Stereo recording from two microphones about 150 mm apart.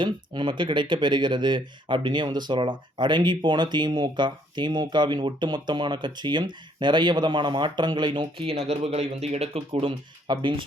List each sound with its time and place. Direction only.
0.0 s speech: 30° right (ahead or behind)